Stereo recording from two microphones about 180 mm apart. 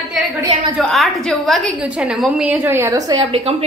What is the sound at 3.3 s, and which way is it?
Speech, 35° right (ahead or behind).